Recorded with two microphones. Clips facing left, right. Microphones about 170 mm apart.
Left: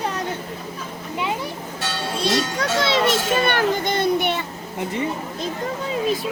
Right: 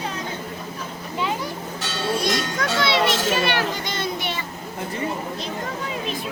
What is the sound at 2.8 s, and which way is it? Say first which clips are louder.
Children playing: even; 45° left (ahead or behind).